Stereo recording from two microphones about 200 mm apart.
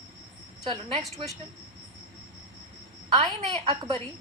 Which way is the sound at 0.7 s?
25° right (ahead or behind).